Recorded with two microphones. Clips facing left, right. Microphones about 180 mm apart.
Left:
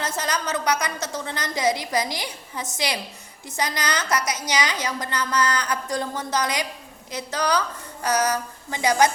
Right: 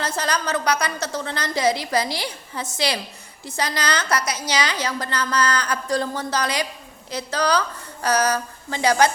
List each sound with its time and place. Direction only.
0.0 s a woman's voice: 20° left (ahead or behind)